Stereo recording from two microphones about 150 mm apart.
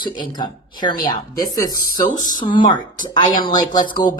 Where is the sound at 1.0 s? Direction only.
70° left (ahead or behind).